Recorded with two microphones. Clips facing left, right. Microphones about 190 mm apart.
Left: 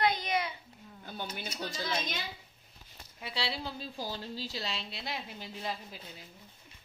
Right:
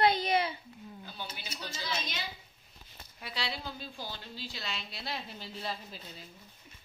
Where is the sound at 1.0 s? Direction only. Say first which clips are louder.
Left 7 dB; 50° left (ahead or behind).